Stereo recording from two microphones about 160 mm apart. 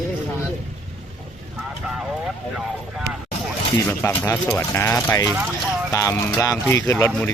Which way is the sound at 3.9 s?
15° left (ahead or behind).